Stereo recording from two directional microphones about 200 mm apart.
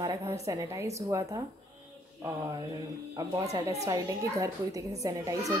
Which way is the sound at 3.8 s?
15° right (ahead or behind).